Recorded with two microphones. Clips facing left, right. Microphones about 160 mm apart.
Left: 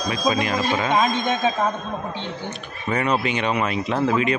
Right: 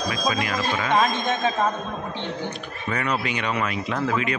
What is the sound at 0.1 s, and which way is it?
Speech, 25° left (ahead or behind).